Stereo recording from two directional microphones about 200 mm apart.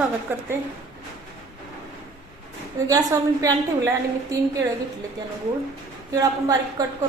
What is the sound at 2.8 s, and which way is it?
A woman's voice, 15° right (ahead or behind).